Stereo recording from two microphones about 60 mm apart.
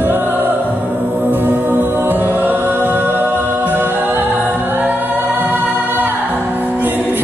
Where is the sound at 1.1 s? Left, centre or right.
Right.